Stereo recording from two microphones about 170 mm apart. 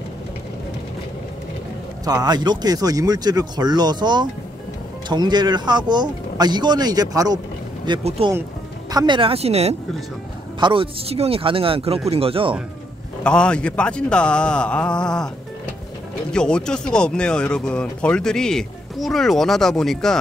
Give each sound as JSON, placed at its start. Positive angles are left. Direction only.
{"t": 2.0, "sound": "speech", "side_deg": -25}
{"t": 13.2, "sound": "speech", "side_deg": 5}